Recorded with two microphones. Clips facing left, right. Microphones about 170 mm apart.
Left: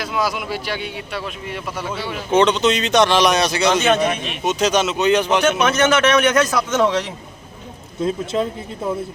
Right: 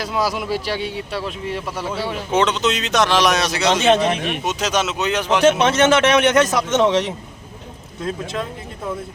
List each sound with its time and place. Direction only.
0.0 s a man's voice: 35° right (ahead or behind)
2.3 s speech: centre (ahead or behind)
3.8 s a man's voice: 30° right (ahead or behind)
4.4 s speech: centre (ahead or behind)
5.4 s a man's voice: 30° right (ahead or behind)